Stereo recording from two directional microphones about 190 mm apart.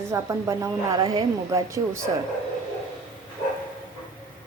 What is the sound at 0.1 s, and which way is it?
A woman's voice, 15° right (ahead or behind).